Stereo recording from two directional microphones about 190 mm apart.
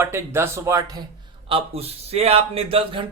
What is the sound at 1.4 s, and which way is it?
Speech, 30° right (ahead or behind).